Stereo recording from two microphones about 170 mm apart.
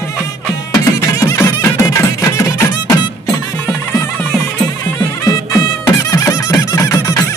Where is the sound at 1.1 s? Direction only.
20° left (ahead or behind).